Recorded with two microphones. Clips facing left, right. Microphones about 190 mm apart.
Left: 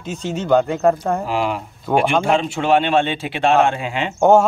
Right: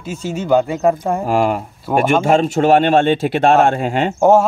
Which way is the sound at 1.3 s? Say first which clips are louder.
Right 5 dB; 50° right (ahead or behind).